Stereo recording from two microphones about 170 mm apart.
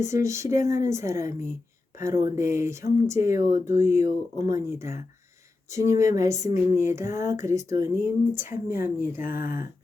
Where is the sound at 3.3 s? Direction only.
50° left (ahead or behind).